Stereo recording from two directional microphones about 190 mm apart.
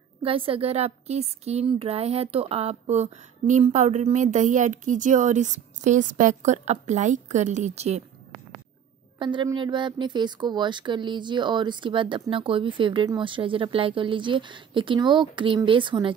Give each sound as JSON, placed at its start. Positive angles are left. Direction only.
{"t": 0.2, "sound": "a woman's voice", "side_deg": -30}
{"t": 9.2, "sound": "speech", "side_deg": -25}